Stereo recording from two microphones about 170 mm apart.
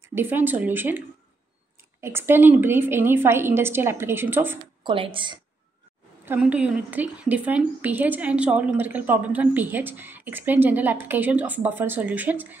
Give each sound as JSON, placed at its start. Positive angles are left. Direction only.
{"t": 0.1, "sound": "a woman's voice", "side_deg": -10}
{"t": 4.8, "sound": "a woman's voice", "side_deg": -30}
{"t": 6.2, "sound": "a woman's voice", "side_deg": -10}